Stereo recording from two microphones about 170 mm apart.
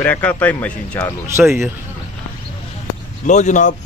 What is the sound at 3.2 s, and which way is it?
Speech, 45° left (ahead or behind).